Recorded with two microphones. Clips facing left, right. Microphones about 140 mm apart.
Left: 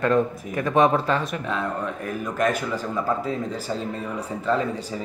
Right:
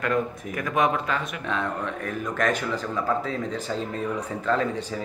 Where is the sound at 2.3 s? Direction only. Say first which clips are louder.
Left 2 dB; 5° left (ahead or behind).